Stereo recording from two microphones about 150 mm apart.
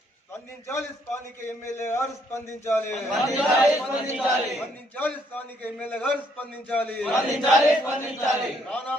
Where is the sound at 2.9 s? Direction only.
Centre (ahead or behind).